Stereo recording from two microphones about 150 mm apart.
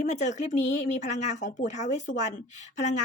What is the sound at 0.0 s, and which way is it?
A woman's voice, 55° left (ahead or behind).